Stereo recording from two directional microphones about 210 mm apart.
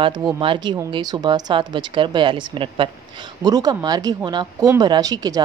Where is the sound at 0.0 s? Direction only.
20° right (ahead or behind).